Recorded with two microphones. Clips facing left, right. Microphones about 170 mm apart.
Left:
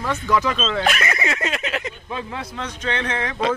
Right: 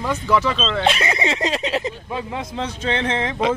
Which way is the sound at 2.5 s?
30° right (ahead or behind).